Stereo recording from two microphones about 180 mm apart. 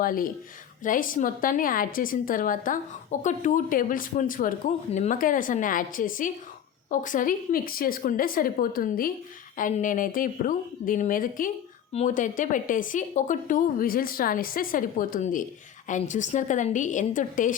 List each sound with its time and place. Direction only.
0.0 s a woman's voice: 50° left (ahead or behind)